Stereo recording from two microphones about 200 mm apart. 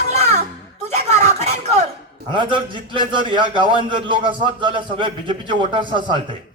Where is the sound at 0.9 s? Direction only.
35° right (ahead or behind).